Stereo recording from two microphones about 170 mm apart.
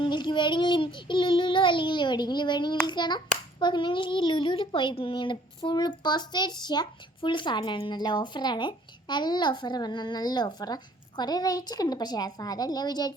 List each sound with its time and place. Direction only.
0.0 s child singing: 25° left (ahead or behind)
2.8 s a child's voice: 25° left (ahead or behind)